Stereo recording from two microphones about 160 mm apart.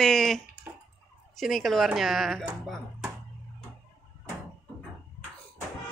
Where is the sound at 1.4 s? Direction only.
Centre (ahead or behind).